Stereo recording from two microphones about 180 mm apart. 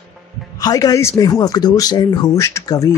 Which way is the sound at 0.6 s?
20° left (ahead or behind).